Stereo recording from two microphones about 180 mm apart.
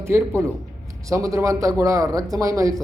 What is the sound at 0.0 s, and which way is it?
A man's voice, 15° right (ahead or behind).